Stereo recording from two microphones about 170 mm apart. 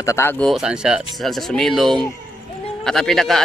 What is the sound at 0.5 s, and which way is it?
A man's voice, 5° right (ahead or behind).